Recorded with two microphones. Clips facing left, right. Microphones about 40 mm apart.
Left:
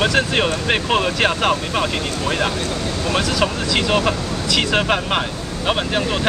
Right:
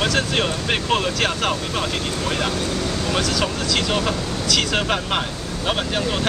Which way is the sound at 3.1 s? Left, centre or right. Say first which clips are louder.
Left 4 dB; centre.